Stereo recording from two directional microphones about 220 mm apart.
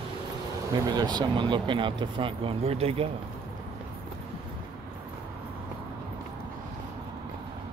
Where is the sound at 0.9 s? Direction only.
20° right (ahead or behind).